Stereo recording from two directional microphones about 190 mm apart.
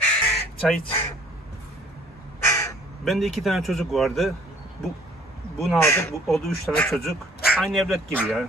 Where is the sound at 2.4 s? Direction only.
15° left (ahead or behind).